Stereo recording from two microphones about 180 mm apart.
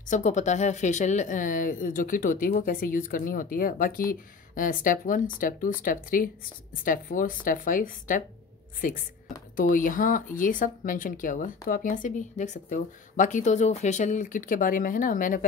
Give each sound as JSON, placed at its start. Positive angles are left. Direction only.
{"t": 0.0, "sound": "speech", "side_deg": 45}
{"t": 9.6, "sound": "speech", "side_deg": 50}